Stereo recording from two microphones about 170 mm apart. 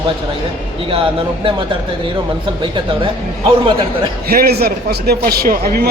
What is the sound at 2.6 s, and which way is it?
A man's voice, 30° right (ahead or behind).